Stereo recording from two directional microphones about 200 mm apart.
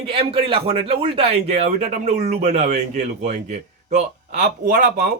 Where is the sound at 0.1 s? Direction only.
30° right (ahead or behind).